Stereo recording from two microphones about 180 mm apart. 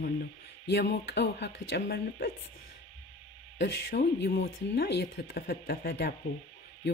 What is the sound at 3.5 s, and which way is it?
Speech, 65° left (ahead or behind).